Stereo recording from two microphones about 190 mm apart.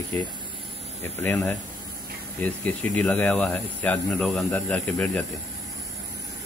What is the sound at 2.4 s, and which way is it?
Speech, 10° left (ahead or behind).